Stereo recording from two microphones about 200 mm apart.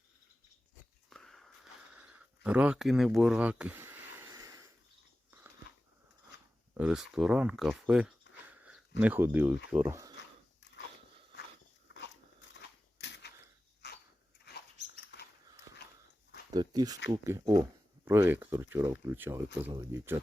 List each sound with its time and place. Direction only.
1.1 s a sound: centre (ahead or behind); by 4.7 s 15° right (ahead or behind)
5.3 s biting: 10° right (ahead or behind)
6.7 s speech: 5° right (ahead or behind)
8.4 s a sound: 5° right (ahead or behind)
9.0 s speech: 10° right (ahead or behind)
11.9 s dog: 60° left (ahead or behind)
15.0 s mouse: 55° left (ahead or behind)
16.5 s speech: 20° right (ahead or behind)